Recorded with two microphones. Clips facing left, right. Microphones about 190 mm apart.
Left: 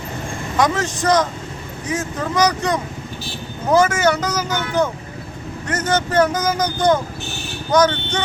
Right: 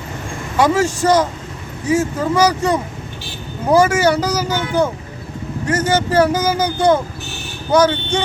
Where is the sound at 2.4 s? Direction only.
10° right (ahead or behind).